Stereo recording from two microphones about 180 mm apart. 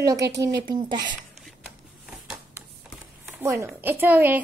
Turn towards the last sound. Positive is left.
turn(degrees=-10)  # may be behind; listen again after turning